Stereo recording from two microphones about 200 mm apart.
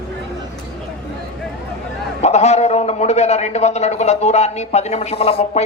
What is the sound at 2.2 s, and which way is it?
A man's voice, 35° left (ahead or behind).